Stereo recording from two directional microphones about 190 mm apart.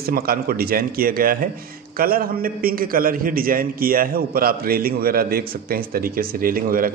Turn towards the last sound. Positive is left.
turn(degrees=-50)  # may be behind; listen again after turning